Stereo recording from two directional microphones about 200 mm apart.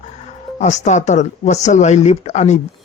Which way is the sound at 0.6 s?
35° left (ahead or behind).